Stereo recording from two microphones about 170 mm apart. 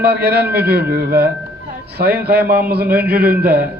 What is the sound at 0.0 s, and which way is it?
A man's voice, 70° right (ahead or behind).